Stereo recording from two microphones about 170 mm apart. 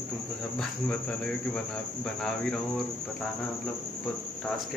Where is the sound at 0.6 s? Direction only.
5° left (ahead or behind).